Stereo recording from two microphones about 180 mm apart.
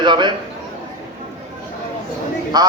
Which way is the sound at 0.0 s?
25° right (ahead or behind).